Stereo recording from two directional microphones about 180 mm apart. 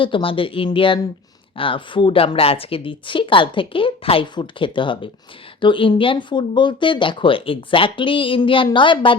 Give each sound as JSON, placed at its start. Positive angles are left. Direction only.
{"t": 0.0, "sound": "speech", "side_deg": 30}